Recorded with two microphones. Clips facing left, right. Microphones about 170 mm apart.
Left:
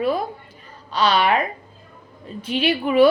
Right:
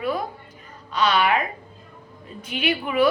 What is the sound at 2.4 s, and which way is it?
Speech, 30° left (ahead or behind).